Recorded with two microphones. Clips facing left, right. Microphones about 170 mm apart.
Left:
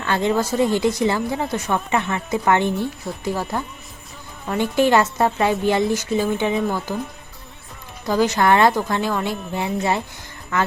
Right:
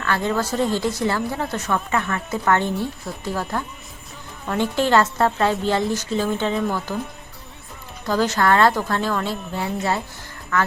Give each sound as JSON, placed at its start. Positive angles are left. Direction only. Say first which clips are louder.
{"t": 0.0, "sound": "a woman's voice", "louder": "left 2 dB", "side_deg": 20}
{"t": 8.0, "sound": "a woman's voice", "louder": "left 2 dB", "side_deg": 15}